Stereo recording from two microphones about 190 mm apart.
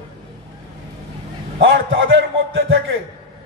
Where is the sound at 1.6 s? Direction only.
90° right.